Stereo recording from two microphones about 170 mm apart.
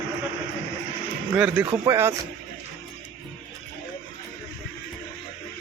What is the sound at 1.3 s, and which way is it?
Speech, 10° right (ahead or behind).